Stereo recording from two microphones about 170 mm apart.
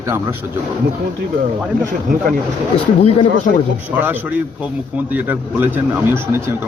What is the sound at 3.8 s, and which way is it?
A man's voice, 10° right (ahead or behind).